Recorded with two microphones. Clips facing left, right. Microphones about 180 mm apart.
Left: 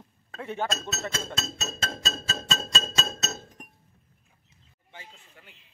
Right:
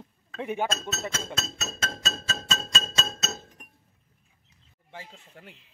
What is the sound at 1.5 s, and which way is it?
Music, 35° left (ahead or behind).